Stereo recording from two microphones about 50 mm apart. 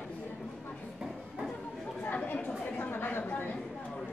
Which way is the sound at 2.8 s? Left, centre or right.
Left.